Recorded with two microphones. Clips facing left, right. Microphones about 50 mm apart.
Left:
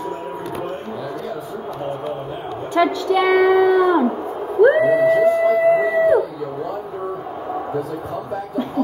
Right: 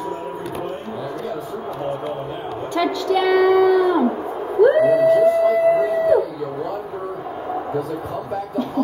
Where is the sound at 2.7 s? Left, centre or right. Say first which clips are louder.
Left 3 dB; centre.